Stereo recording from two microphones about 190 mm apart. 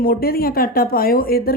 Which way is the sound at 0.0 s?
50° left (ahead or behind).